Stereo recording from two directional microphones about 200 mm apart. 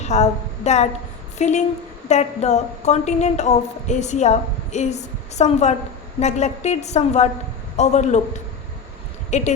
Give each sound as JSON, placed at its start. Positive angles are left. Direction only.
{"t": 0.0, "sound": "a woman's voice", "side_deg": 35}
{"t": 9.3, "sound": "a woman's voice", "side_deg": 35}